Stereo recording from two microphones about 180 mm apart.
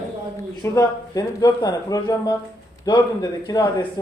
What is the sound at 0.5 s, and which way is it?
A man's voice, 20° left (ahead or behind).